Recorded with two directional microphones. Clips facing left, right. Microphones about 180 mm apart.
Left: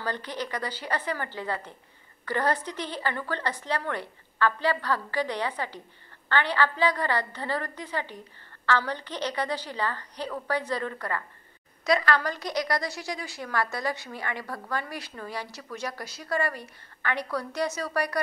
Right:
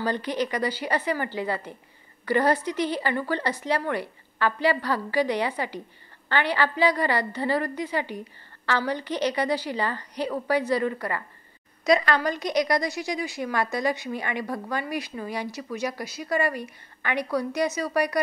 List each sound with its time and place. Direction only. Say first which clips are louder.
0.0 s a woman's voice: right 6 dB; 15° right (ahead or behind)